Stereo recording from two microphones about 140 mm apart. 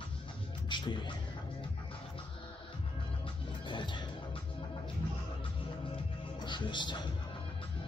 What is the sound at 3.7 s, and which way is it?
Music, 35° left (ahead or behind).